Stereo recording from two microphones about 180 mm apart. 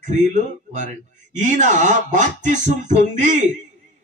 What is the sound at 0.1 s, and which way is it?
A man's voice, 40° right (ahead or behind).